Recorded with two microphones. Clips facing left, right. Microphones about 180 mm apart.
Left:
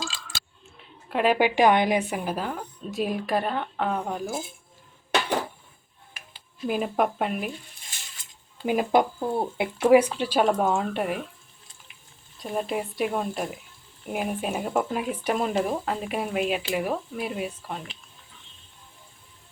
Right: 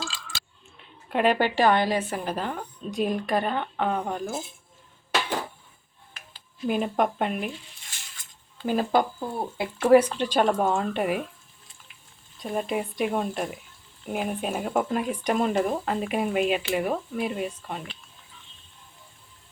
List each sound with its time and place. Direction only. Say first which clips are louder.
0.8 s a woman's voice: right 1 dB; centre (ahead or behind)
6.1 s speech: even; 5° left (ahead or behind)
8.6 s speech: left 1 dB; 10° left (ahead or behind)
9.3 s speech: left 5 dB; 25° left (ahead or behind)
9.8 s speech: even; 10° left (ahead or behind)
12.4 s speech: even; centre (ahead or behind)